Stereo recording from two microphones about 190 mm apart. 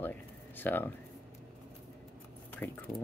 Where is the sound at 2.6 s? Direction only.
10° left (ahead or behind).